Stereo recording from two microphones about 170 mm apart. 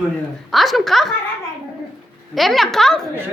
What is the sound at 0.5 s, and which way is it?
Speech, centre (ahead or behind).